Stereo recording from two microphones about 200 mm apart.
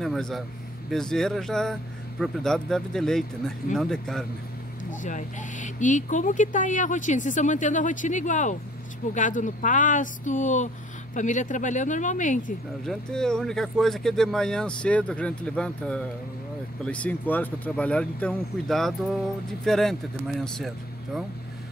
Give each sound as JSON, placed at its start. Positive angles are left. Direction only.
{"t": 0.0, "sound": "speech", "side_deg": 0}
{"t": 5.0, "sound": "speech", "side_deg": 40}
{"t": 12.8, "sound": "speech", "side_deg": 5}